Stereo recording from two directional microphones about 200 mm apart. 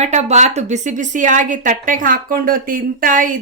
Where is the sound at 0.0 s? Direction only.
35° right (ahead or behind).